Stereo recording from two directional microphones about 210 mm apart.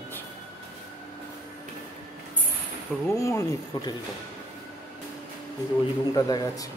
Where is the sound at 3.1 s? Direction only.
15° left (ahead or behind).